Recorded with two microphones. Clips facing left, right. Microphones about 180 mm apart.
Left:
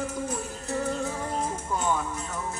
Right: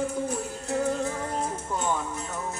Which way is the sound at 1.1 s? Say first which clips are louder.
Even; 5° left (ahead or behind).